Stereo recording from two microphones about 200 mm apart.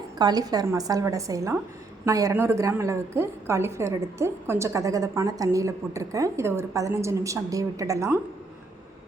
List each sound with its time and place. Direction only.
0.2 s a woman's voice: 20° right (ahead or behind)